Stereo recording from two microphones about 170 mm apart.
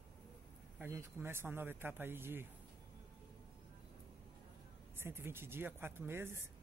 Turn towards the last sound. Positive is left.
turn(degrees=-15)  # may be behind; listen again after turning